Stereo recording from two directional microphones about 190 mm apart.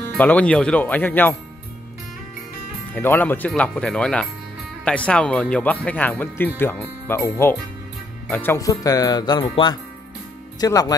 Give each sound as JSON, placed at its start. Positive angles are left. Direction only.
{"t": 0.2, "sound": "speech", "side_deg": 5}
{"t": 2.9, "sound": "speech", "side_deg": 10}
{"t": 8.3, "sound": "speech", "side_deg": 10}